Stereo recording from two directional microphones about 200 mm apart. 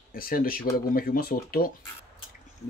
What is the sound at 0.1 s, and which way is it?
Speech, 45° left (ahead or behind).